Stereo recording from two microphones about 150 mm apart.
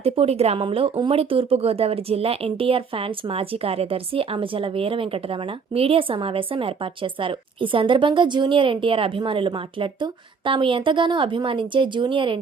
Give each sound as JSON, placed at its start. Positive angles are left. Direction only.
{"t": 0.0, "sound": "speech", "side_deg": -40}